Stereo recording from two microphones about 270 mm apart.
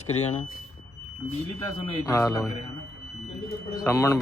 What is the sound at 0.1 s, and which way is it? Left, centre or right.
Speech, left.